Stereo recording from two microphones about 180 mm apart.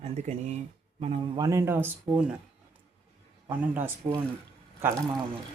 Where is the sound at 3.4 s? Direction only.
10° right (ahead or behind).